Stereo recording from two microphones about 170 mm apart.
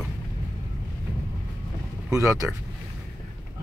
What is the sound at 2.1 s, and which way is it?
Speech, 20° right (ahead or behind).